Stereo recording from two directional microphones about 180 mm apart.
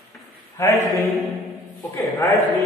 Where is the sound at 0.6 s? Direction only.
15° left (ahead or behind).